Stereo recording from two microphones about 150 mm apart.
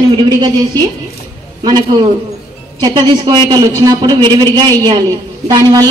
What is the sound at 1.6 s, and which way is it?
A man's voice, 30° right (ahead or behind).